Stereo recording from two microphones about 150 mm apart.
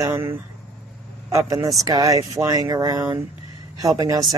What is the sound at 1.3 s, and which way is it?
Speech, 25° right (ahead or behind).